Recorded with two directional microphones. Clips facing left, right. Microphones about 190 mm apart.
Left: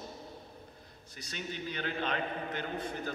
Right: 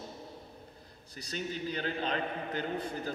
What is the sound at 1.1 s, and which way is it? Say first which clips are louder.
A man's voice: right 4 dB; 35° right (ahead or behind).